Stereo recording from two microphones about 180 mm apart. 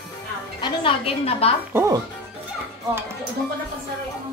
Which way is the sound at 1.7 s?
15° right (ahead or behind).